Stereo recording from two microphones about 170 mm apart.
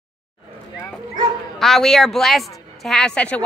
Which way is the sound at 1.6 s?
Centre (ahead or behind).